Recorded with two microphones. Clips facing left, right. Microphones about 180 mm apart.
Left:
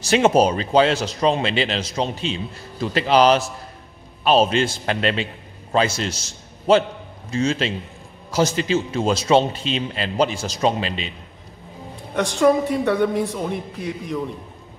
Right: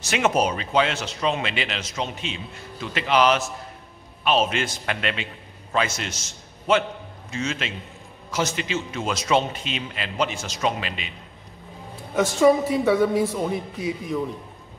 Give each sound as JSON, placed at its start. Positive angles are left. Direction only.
{"t": 0.0, "sound": "a man's voice", "side_deg": 30}
{"t": 12.2, "sound": "a woman's voice", "side_deg": -5}